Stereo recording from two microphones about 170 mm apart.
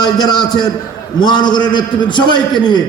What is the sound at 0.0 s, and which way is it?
A man's voice, 25° left (ahead or behind).